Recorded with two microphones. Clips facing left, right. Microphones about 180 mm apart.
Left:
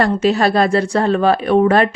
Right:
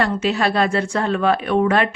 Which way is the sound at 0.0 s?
40° left (ahead or behind).